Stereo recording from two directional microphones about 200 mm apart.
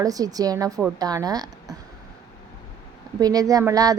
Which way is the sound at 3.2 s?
20° right (ahead or behind).